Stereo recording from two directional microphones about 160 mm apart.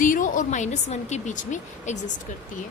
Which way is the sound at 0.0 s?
55° left (ahead or behind).